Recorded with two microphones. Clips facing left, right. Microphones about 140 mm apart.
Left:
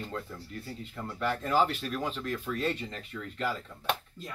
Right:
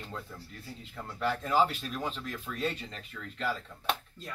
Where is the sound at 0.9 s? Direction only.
Centre (ahead or behind).